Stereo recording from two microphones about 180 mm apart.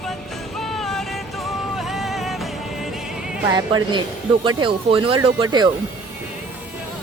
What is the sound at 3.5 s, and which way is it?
Speech, 25° right (ahead or behind).